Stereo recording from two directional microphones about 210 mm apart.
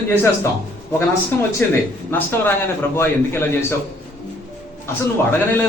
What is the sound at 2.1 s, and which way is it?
Speech, 10° left (ahead or behind).